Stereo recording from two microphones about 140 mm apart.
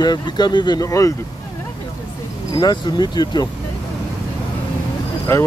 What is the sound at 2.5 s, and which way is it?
Speech, 30° left (ahead or behind).